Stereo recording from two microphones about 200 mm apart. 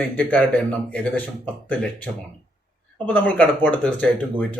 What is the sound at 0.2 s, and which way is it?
Speech, 10° left (ahead or behind).